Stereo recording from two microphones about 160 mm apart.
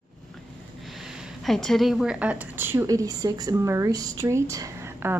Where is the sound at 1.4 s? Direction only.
Centre (ahead or behind).